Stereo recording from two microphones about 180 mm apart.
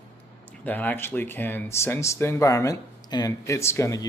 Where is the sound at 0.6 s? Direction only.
10° left (ahead or behind).